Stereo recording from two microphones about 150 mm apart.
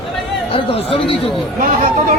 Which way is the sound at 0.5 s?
40° left (ahead or behind).